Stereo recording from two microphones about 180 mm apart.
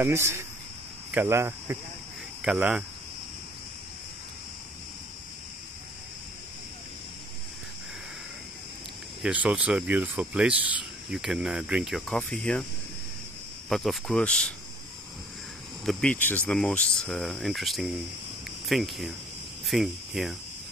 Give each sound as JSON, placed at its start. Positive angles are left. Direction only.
{"t": 0.0, "sound": "speech", "side_deg": -15}
{"t": 9.2, "sound": "speech", "side_deg": -5}
{"t": 13.7, "sound": "speech", "side_deg": 0}
{"t": 15.8, "sound": "speech", "side_deg": 5}